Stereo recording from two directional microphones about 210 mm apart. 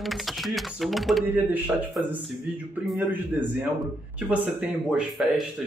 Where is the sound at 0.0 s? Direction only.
Centre (ahead or behind).